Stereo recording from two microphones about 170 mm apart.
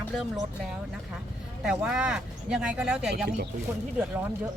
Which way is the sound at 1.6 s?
5° right (ahead or behind).